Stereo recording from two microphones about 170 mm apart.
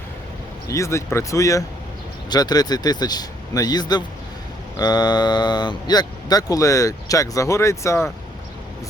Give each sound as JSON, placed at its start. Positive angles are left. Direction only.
{"t": 0.7, "sound": "speech", "side_deg": 15}